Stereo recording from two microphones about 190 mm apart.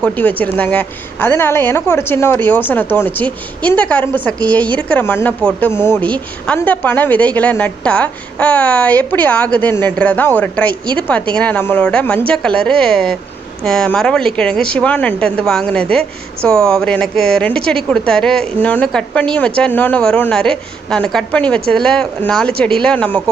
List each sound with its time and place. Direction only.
0.0 s a woman's voice: 10° left (ahead or behind)